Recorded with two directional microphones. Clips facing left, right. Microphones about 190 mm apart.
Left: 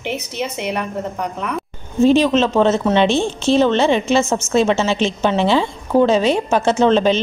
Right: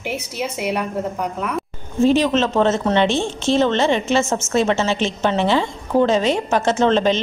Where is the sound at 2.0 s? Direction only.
15° left (ahead or behind).